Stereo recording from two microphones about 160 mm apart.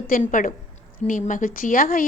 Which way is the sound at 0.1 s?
55° left (ahead or behind).